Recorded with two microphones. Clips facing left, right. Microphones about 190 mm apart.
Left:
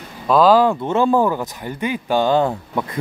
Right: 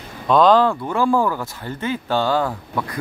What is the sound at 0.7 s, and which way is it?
Speech, 25° left (ahead or behind).